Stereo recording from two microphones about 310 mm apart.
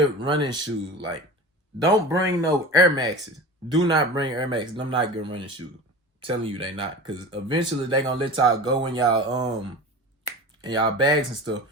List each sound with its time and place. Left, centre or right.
0.3 s speech: centre
10.6 s speech: centre